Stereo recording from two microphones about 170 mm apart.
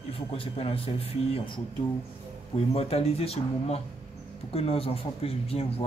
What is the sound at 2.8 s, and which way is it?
Speech, 35° left (ahead or behind).